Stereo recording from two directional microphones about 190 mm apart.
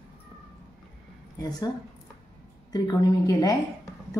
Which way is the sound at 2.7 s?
20° left (ahead or behind).